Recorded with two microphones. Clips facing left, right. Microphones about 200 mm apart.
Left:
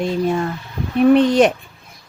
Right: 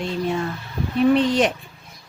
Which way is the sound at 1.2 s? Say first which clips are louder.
Left 6 dB; 50° left (ahead or behind).